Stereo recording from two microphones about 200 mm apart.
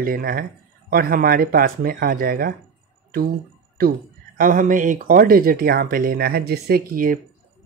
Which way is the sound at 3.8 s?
50° right (ahead or behind).